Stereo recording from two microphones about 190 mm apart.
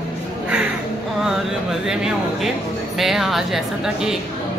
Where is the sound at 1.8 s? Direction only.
5° right (ahead or behind).